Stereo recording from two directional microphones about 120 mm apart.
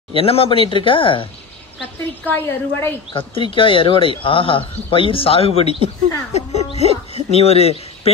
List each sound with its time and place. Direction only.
0.1 s a man's voice: 50° left (ahead or behind)
2.2 s a woman's voice: 15° left (ahead or behind)
3.1 s a man's voice: 45° left (ahead or behind)
6.3 s music: 65° left (ahead or behind)
7.2 s speech: 60° left (ahead or behind)